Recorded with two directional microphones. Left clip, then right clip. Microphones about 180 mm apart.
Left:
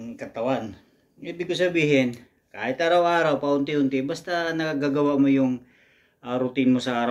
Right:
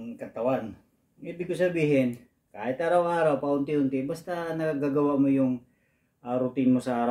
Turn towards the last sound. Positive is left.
turn(degrees=-10)  # may be behind; listen again after turning